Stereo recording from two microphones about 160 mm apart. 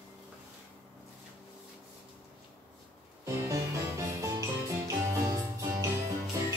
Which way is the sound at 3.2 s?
20° right (ahead or behind).